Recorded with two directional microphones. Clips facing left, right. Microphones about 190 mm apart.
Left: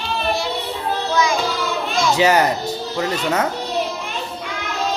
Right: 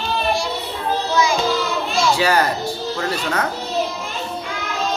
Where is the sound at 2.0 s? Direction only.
20° left (ahead or behind).